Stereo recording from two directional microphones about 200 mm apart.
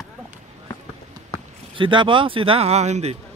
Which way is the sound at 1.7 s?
25° right (ahead or behind).